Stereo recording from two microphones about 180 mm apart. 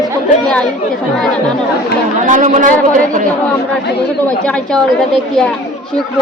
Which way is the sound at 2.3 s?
45° right (ahead or behind).